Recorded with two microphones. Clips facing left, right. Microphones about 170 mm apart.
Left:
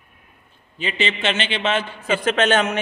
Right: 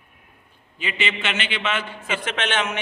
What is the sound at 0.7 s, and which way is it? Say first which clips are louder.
A man's voice: left 3 dB; 30° left (ahead or behind).